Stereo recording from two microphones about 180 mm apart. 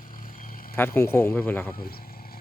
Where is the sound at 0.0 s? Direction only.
50° left (ahead or behind).